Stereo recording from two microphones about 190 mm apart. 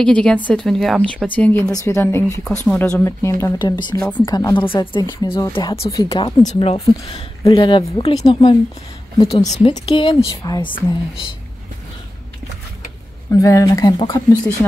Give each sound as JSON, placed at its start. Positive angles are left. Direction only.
{"t": 0.0, "sound": "speech", "side_deg": 5}
{"t": 4.0, "sound": "a woman's voice", "side_deg": 0}
{"t": 4.3, "sound": "speech", "side_deg": 20}
{"t": 13.3, "sound": "speech", "side_deg": 15}